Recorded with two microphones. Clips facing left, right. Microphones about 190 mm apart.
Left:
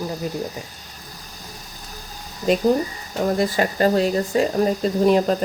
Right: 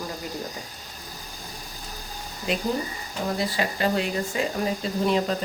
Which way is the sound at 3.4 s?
45° left (ahead or behind).